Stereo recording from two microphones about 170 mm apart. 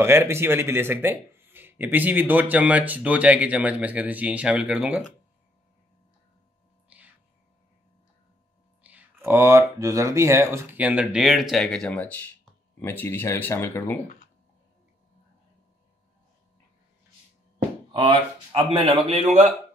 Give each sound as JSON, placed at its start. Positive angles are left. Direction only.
{"t": 0.0, "sound": "speech", "side_deg": -15}
{"t": 6.9, "sound": "a sound", "side_deg": -10}
{"t": 8.8, "sound": "speech", "side_deg": -10}
{"t": 17.9, "sound": "a man's voice", "side_deg": -30}